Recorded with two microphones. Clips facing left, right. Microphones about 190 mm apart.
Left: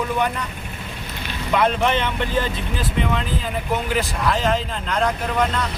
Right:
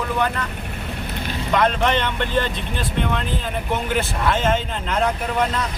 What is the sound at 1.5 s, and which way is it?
Speech, 5° left (ahead or behind).